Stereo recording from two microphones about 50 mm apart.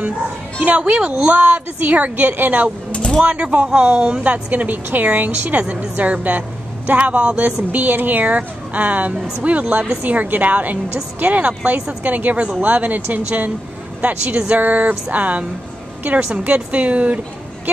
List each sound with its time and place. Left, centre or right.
0.6 s a woman's voice: right
0.9 s a woman's voice: centre
1.3 s a woman's voice: right
2.9 s a sound: left
3.3 s a woman's voice: right
4.2 s a woman's voice: right
7.7 s a woman's voice: right
14.0 s a woman's voice: centre
14.6 s a woman's voice: right
16.4 s a woman's voice: right